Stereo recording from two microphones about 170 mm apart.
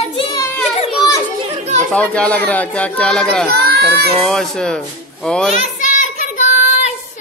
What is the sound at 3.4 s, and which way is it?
Speech, 70° right (ahead or behind).